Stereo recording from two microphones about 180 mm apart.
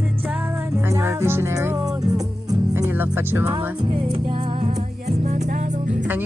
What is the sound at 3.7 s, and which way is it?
Music, 25° right (ahead or behind).